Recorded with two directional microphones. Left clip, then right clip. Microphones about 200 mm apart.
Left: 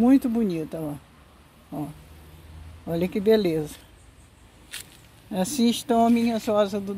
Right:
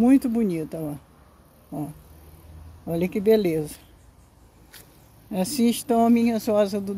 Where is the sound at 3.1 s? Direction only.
35° right (ahead or behind).